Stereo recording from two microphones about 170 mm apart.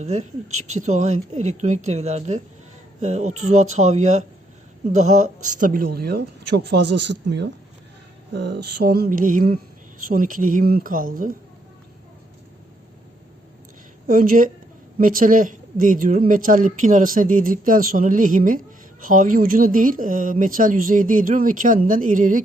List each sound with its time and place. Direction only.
0.0 s speech: 45° right (ahead or behind); by 7.5 s 90° right
8.3 s mantra: 85° right; by 9.6 s 55° right (ahead or behind)
10.0 s speech: 55° right (ahead or behind)
14.1 s speech: 55° right (ahead or behind)